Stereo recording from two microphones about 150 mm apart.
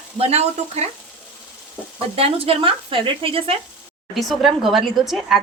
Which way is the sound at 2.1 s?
40° right (ahead or behind).